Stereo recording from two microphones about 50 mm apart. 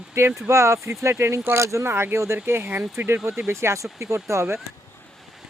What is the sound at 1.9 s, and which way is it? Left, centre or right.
Speech, right.